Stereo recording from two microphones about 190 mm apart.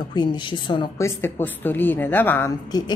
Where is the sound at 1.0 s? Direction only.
15° left (ahead or behind).